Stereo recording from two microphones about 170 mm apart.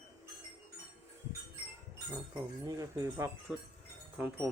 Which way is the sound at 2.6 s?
20° right (ahead or behind).